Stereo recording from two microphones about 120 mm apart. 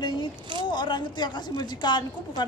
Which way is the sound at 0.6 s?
40° left (ahead or behind).